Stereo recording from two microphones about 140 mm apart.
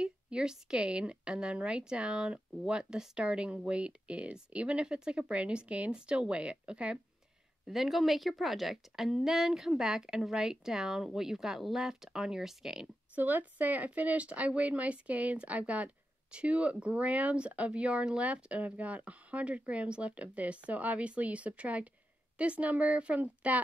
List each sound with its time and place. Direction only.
0.0 s a woman's voice: 5° right (ahead or behind)